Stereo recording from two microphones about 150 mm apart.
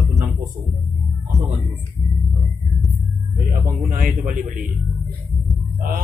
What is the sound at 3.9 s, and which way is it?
Speech, 60° right (ahead or behind).